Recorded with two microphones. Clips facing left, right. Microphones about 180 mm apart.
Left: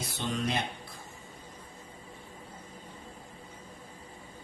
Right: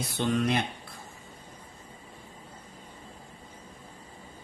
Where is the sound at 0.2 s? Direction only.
60° right (ahead or behind).